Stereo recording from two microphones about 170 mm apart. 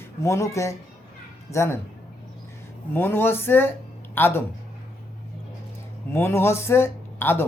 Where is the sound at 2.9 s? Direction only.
10° left (ahead or behind).